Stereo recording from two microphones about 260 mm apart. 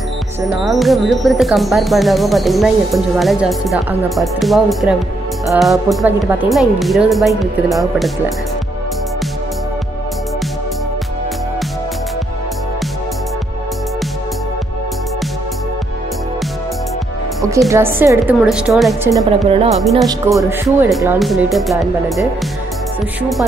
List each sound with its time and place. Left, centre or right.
0.6 s speech: centre
17.6 s a woman's voice: centre
19.2 s a woman's voice: right
19.8 s speech: centre
20.1 s a woman's voice: centre
20.6 s speech: centre